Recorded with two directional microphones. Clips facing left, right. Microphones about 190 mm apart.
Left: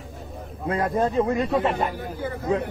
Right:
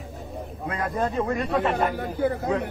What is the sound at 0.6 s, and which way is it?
Speech, 25° left (ahead or behind).